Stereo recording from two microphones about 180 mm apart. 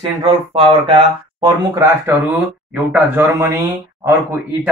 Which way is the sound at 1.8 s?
10° right (ahead or behind).